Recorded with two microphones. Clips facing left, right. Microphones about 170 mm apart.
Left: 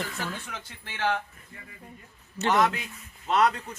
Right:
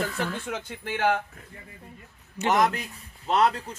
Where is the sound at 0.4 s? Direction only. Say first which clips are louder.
Right 9 dB; 50° right (ahead or behind).